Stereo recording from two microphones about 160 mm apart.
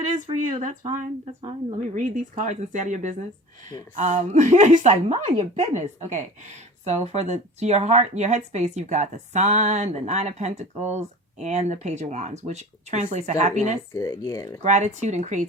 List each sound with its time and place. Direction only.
0.5 s speech: 55° right (ahead or behind)
2.0 s speech: 50° right (ahead or behind)
13.9 s speech: 20° left (ahead or behind)
14.6 s speech: 45° right (ahead or behind)